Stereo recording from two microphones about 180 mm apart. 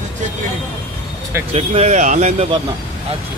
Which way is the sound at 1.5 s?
35° right (ahead or behind).